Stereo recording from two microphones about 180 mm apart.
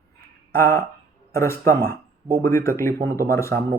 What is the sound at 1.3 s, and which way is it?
Speech, 15° left (ahead or behind).